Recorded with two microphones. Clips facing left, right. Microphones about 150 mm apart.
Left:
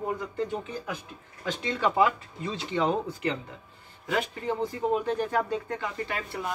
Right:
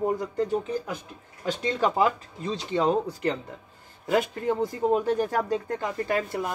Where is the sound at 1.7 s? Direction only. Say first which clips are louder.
Even; 40° right (ahead or behind).